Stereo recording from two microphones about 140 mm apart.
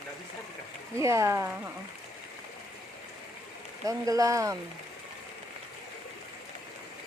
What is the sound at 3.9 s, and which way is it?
Speech, 25° right (ahead or behind).